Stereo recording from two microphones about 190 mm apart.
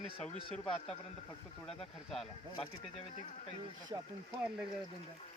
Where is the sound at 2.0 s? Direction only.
Centre (ahead or behind).